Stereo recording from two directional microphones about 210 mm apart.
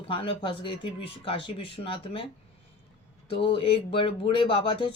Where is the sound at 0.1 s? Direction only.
25° left (ahead or behind).